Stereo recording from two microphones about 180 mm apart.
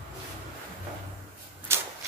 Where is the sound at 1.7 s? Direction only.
15° right (ahead or behind).